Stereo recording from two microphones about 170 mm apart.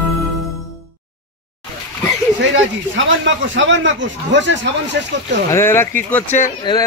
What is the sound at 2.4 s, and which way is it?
Speech, 90° right.